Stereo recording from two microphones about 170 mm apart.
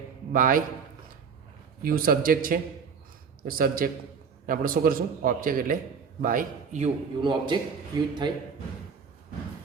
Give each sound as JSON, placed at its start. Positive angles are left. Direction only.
{"t": 0.3, "sound": "a man's voice", "side_deg": -55}
{"t": 1.8, "sound": "a man's voice", "side_deg": -60}
{"t": 7.2, "sound": "a man's voice", "side_deg": -25}